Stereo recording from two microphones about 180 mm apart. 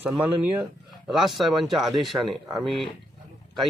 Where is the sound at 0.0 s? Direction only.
10° right (ahead or behind).